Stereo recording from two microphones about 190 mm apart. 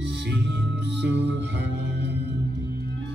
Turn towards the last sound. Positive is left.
turn(degrees=-65)  # may be behind; listen again after turning